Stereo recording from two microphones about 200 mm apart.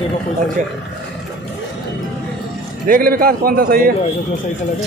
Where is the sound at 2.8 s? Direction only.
45° right (ahead or behind).